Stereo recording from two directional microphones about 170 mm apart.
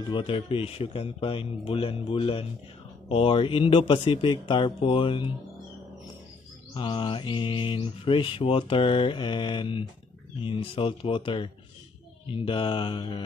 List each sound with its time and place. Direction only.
0.0 s speech: 30° left (ahead or behind)
3.1 s mantra: 30° left (ahead or behind)
6.7 s mantra: 30° left (ahead or behind)
10.4 s speech: 30° left (ahead or behind)
12.3 s mantra: 30° left (ahead or behind)